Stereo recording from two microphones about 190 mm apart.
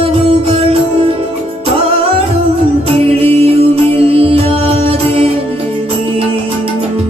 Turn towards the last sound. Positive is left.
turn(degrees=-30)  # may be behind; listen again after turning